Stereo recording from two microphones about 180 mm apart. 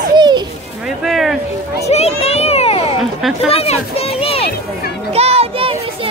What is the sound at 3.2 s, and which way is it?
Speech, centre (ahead or behind).